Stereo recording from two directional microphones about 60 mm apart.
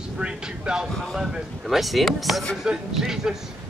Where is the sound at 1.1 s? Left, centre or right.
Centre.